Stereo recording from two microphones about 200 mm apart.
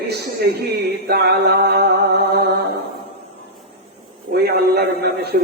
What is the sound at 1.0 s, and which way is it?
Speech, 55° right (ahead or behind).